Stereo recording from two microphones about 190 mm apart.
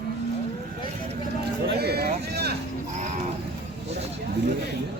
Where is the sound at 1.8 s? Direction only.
60° right (ahead or behind).